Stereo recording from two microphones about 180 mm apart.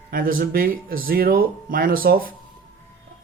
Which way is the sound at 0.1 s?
50° right (ahead or behind).